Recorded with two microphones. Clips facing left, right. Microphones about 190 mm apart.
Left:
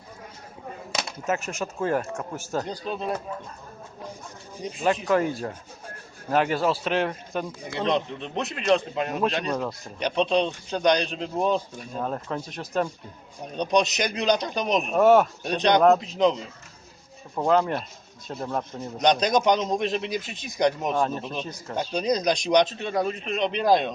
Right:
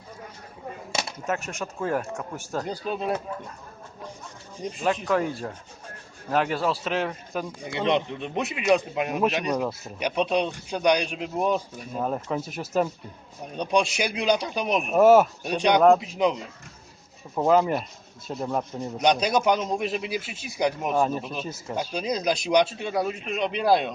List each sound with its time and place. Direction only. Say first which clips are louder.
0.9 s speech: left 1 dB; 5° left (ahead or behind)
4.6 s speech: left 1 dB; centre (ahead or behind)
17.3 s speech: right 2 dB; 5° right (ahead or behind)